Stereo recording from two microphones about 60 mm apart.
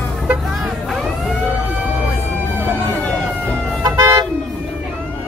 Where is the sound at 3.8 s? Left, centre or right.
Right.